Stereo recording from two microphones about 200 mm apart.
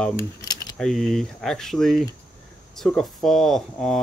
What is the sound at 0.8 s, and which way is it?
Speech, centre (ahead or behind).